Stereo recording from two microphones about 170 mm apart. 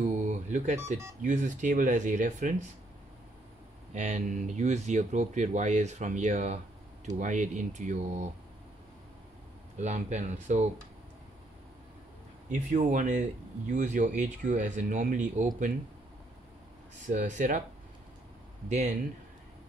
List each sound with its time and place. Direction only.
0.0 s beep: 45° right (ahead or behind)
1.2 s speech: 45° right (ahead or behind)
3.9 s speech: 45° right (ahead or behind)
9.8 s speech: 45° right (ahead or behind)
12.6 s speech: 45° right (ahead or behind)
17.1 s speech: 50° right (ahead or behind)